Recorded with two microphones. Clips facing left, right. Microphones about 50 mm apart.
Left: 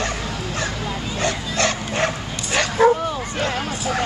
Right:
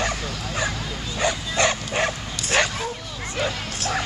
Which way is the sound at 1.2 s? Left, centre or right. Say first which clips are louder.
Even; centre.